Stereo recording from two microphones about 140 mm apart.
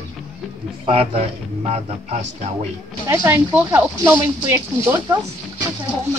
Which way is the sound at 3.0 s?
20° right (ahead or behind).